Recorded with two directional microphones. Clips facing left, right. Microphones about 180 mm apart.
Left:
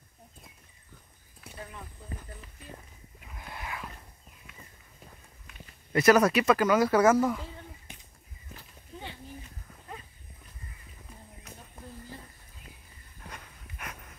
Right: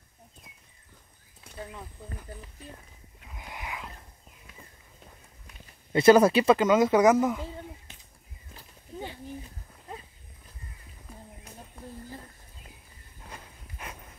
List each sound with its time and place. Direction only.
3.3 s a sound: 15° right (ahead or behind)
5.9 s speech: 25° right (ahead or behind)
13.3 s dog: 30° right (ahead or behind)